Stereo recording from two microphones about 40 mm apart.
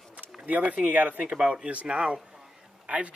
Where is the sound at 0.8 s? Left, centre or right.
Right.